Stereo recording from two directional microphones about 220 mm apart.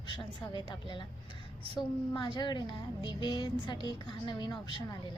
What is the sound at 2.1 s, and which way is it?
Speech, 20° left (ahead or behind).